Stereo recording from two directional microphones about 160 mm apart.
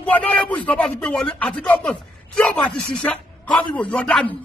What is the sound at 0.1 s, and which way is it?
A man's voice, 10° left (ahead or behind).